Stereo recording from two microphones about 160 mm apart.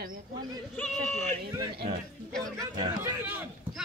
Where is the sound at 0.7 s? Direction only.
10° left (ahead or behind).